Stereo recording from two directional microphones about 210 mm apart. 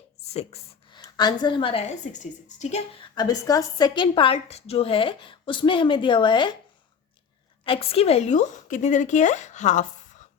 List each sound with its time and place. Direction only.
0.3 s a woman's voice: 25° left (ahead or behind)
3.2 s a woman's voice: 20° left (ahead or behind)
7.6 s a woman's voice: 25° left (ahead or behind)